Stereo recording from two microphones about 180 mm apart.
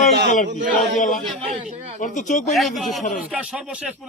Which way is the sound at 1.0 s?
50° left (ahead or behind).